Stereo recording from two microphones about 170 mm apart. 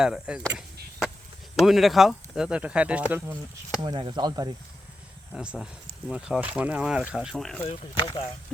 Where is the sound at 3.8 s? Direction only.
25° right (ahead or behind).